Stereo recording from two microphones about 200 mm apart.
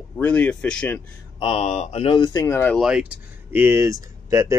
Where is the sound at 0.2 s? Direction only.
10° left (ahead or behind).